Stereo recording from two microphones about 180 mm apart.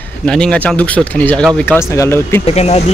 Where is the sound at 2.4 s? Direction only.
35° left (ahead or behind).